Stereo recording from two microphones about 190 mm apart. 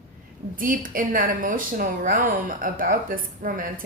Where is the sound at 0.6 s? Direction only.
45° right (ahead or behind).